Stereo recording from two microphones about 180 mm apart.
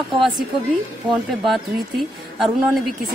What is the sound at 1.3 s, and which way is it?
Speech, centre (ahead or behind).